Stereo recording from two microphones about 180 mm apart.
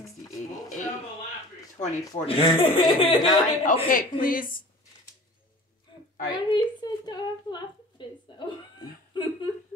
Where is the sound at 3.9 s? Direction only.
50° left (ahead or behind).